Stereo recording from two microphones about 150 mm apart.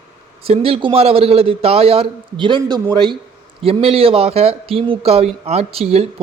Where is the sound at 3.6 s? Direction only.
40° right (ahead or behind).